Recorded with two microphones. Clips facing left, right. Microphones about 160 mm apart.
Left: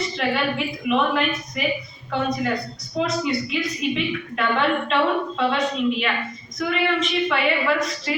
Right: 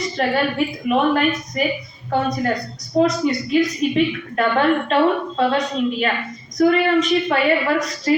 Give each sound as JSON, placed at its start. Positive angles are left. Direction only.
{"t": 0.2, "sound": "a woman's voice", "side_deg": -45}